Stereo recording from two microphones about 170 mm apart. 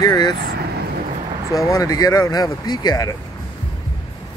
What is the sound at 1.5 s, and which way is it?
Speech, 20° left (ahead or behind).